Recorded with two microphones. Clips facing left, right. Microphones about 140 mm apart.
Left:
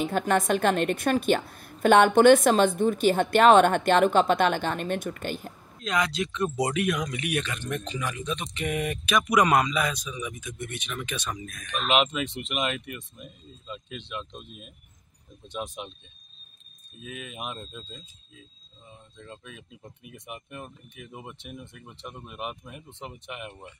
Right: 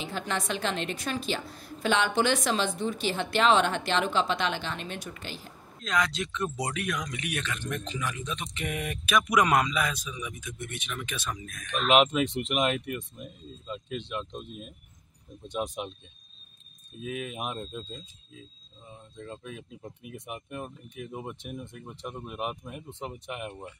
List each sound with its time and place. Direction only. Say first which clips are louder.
0.0 s a woman's voice: left 8 dB; 50° left (ahead or behind)
5.8 s speech: left 2 dB; 5° left (ahead or behind)
6.6 s speech: left 6 dB; 15° left (ahead or behind); by 12.8 s centre (ahead or behind)
12.8 s speech: right 4 dB; 40° right (ahead or behind)
17.1 s speech: right 5 dB; 50° right (ahead or behind)
17.4 s speech: right 2 dB; 5° right (ahead or behind)
19.2 s speech: right 4 dB; 10° right (ahead or behind)